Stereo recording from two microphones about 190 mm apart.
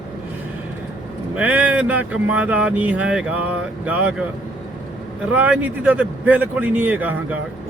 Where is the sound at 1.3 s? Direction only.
10° right (ahead or behind).